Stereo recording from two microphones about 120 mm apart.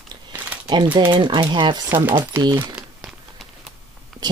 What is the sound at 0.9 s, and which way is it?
Speech, 40° right (ahead or behind).